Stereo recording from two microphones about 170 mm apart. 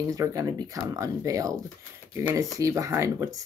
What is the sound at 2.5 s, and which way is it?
Speech, 20° right (ahead or behind).